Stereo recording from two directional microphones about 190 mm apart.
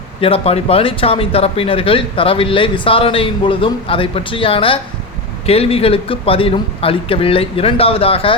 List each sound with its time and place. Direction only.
0.2 s speech: 30° left (ahead or behind)